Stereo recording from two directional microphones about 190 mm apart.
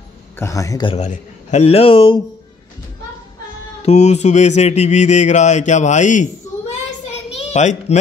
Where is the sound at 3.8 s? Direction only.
35° left (ahead or behind).